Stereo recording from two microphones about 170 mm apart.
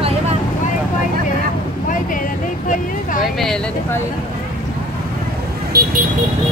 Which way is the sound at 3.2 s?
Centre (ahead or behind).